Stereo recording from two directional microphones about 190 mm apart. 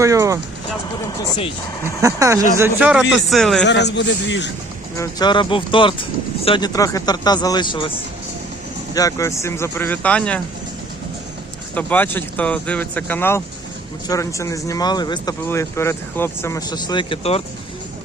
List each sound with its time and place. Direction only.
0.0 s speech: 15° right (ahead or behind)
2.0 s speech: 15° right (ahead or behind); by 3.7 s centre (ahead or behind)
3.7 s a man's voice: 65° left (ahead or behind)
4.9 s speech: 25° left (ahead or behind)
9.0 s speech: 15° left (ahead or behind)
11.7 s speech: 10° left (ahead or behind); by 17.4 s 30° left (ahead or behind)